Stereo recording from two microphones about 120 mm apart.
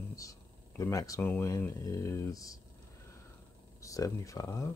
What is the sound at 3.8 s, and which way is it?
Speech, 25° left (ahead or behind).